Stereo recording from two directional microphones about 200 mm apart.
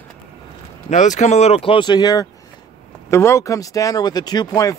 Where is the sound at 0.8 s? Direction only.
35° left (ahead or behind).